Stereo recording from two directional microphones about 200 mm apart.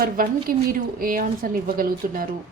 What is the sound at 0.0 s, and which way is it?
A woman's voice, 45° right (ahead or behind).